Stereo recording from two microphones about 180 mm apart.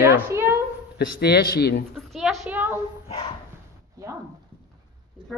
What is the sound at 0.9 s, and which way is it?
Speech, 65° left (ahead or behind).